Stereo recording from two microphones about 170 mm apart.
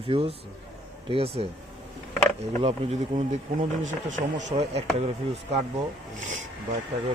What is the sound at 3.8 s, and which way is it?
Speech, 50° right (ahead or behind).